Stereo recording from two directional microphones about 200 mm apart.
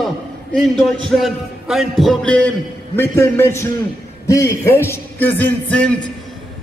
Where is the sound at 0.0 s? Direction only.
Centre (ahead or behind).